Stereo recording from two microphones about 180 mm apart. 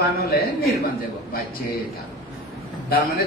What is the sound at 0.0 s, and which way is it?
Speech, 60° left (ahead or behind).